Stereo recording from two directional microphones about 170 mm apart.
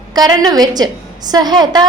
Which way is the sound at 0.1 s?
25° right (ahead or behind).